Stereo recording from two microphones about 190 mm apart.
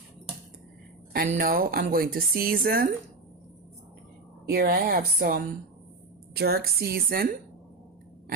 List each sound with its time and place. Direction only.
1.1 s a woman's voice: 50° right (ahead or behind)
4.4 s a woman's voice: 55° right (ahead or behind)